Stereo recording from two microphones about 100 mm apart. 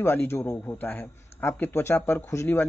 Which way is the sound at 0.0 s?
25° left (ahead or behind).